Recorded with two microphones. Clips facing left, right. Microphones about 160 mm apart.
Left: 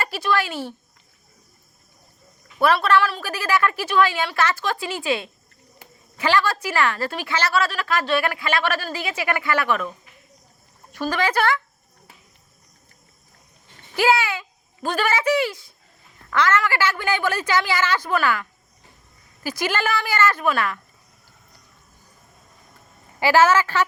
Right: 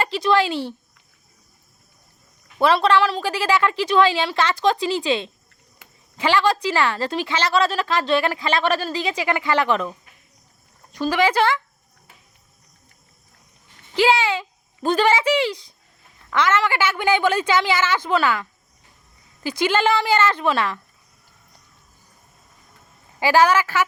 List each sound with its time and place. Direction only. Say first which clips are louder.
0.0 s a woman's voice: right 4 dB; 20° right (ahead or behind)
2.6 s a woman's voice: right 1 dB; 25° right (ahead or behind)
11.1 s a woman's voice: right 4 dB; 10° right (ahead or behind)
13.9 s a woman's voice: right 2 dB; 20° right (ahead or behind)
19.9 s a woman's voice: right 3 dB; 25° right (ahead or behind)
23.2 s a woman's voice: even; 15° right (ahead or behind)